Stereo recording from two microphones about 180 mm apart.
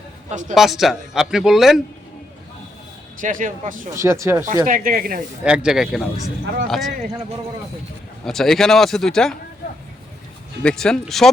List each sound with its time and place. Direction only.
0.3 s speech: 45° right (ahead or behind)
0.5 s a man's voice: centre (ahead or behind)
3.2 s speech: 45° right (ahead or behind)
3.9 s speech: 15° right (ahead or behind)
4.6 s speech: 50° right (ahead or behind)
5.4 s a man's voice: 5° right (ahead or behind)
8.2 s a man's voice: centre (ahead or behind)
10.6 s a man's voice: 5° left (ahead or behind)